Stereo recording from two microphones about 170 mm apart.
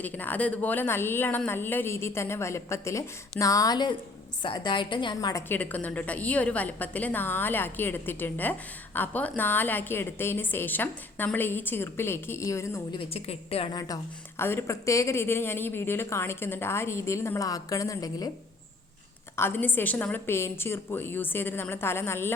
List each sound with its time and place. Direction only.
0.0 s a woman's voice: 10° left (ahead or behind); by 5.4 s 25° left (ahead or behind)
5.5 s a woman's voice: 10° left (ahead or behind)
13.0 s a woman's voice: 35° left (ahead or behind)
13.7 s a woman's voice: 20° left (ahead or behind)
19.4 s a woman's voice: 10° left (ahead or behind)